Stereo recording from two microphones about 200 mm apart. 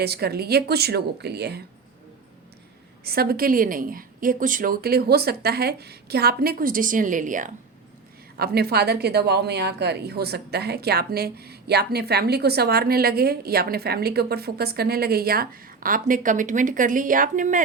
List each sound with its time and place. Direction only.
0.0 s a woman's voice: 50° right (ahead or behind)
3.0 s a woman's voice: 50° right (ahead or behind)
8.4 s a woman's voice: 50° right (ahead or behind)